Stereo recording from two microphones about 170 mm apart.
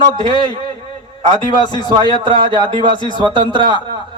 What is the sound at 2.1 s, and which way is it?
Speech, 30° right (ahead or behind).